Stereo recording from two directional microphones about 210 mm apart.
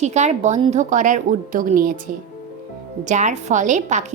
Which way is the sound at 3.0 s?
35° right (ahead or behind).